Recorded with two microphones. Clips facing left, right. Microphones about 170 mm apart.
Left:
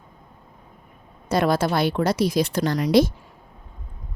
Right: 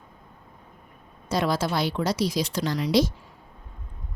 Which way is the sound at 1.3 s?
55° left (ahead or behind).